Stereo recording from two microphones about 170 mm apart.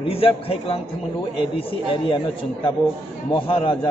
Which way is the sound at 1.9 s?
30° left (ahead or behind).